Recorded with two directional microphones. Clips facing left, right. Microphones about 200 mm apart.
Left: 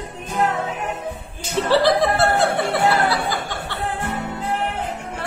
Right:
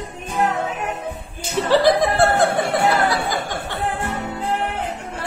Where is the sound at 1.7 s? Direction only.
15° right (ahead or behind).